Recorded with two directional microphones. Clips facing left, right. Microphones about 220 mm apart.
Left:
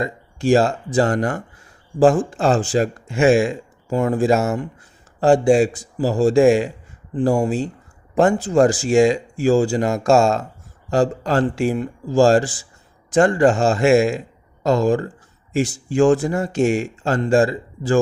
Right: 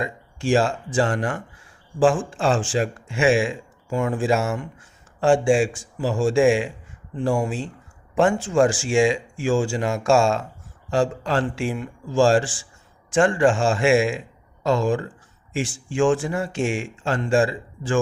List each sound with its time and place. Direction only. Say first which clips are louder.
0.0 s speech: left 5 dB; 40° left (ahead or behind)